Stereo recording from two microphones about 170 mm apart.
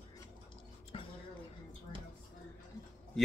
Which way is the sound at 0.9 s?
35° left (ahead or behind).